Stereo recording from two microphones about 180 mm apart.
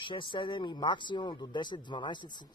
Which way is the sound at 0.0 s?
25° left (ahead or behind).